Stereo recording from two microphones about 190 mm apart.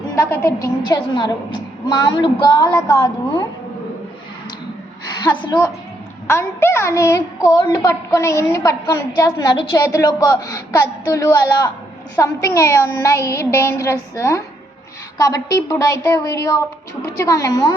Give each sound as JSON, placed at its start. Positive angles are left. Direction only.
{"t": 0.3, "sound": "a woman's voice", "side_deg": 15}
{"t": 5.2, "sound": "a woman's voice", "side_deg": 20}